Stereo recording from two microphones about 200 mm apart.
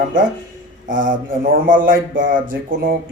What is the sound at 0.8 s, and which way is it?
Speech, 40° right (ahead or behind).